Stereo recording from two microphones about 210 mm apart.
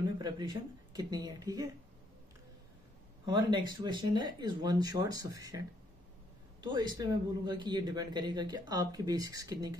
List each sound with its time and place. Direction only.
0.2 s a man's voice: 20° right (ahead or behind)
3.3 s a man's voice: 20° right (ahead or behind)